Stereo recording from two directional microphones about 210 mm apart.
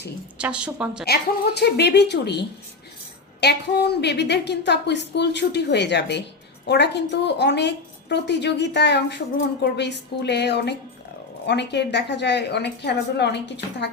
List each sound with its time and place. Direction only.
0.3 s a woman's voice: 5° right (ahead or behind)
1.0 s a woman's voice: 50° left (ahead or behind)
3.4 s a woman's voice: 55° left (ahead or behind)